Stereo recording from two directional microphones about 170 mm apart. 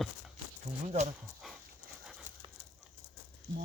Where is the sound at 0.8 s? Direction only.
40° right (ahead or behind).